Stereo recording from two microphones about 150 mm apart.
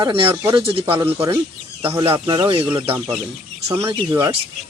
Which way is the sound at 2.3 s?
35° right (ahead or behind).